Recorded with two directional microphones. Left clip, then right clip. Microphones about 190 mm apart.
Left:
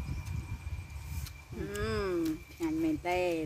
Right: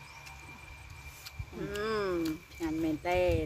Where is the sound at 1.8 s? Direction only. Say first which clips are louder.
Right 1 dB; 20° left (ahead or behind).